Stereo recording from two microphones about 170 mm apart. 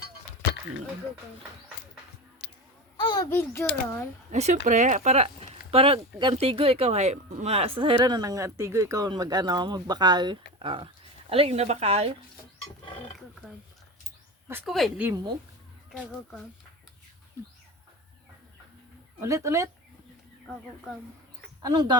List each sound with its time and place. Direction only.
3.0 s a sound: 25° left (ahead or behind)
3.2 s speech: 15° left (ahead or behind)
4.3 s speech: 45° right (ahead or behind)
14.6 s speech: centre (ahead or behind)
19.2 s speech: 15° right (ahead or behind)
21.6 s speech: 25° right (ahead or behind)